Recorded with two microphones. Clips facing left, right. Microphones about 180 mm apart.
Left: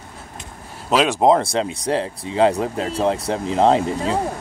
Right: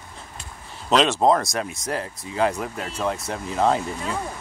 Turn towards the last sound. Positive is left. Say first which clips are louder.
# left 7 dB
turn(degrees=35)  # may be behind; listen again after turning